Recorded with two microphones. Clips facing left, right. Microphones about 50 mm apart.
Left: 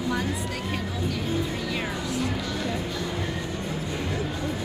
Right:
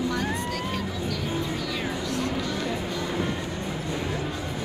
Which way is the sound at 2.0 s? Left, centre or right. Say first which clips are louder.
Right 1 dB; centre.